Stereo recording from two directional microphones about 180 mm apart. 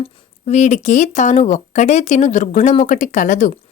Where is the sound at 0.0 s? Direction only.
40° left (ahead or behind).